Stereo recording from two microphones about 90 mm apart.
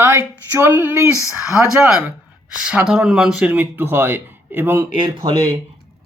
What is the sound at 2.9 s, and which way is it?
Speech, 5° right (ahead or behind).